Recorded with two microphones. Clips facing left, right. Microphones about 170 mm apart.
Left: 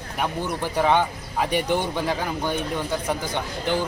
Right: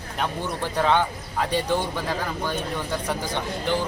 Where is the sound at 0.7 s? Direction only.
15° left (ahead or behind).